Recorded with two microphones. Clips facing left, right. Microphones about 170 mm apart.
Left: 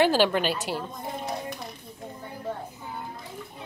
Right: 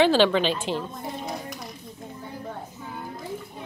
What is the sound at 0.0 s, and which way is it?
Speech, 10° left (ahead or behind).